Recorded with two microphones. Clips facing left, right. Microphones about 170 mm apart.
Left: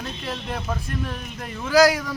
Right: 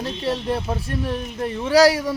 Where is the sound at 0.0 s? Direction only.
35° right (ahead or behind).